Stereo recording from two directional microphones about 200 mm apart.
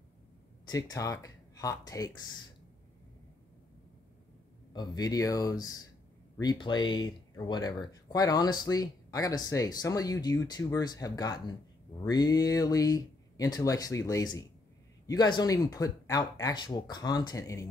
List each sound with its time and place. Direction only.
0.7 s speech: 20° left (ahead or behind)
4.7 s speech: 20° left (ahead or behind)